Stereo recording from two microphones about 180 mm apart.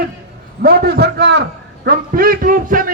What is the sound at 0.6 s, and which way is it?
A man's voice, 60° right (ahead or behind).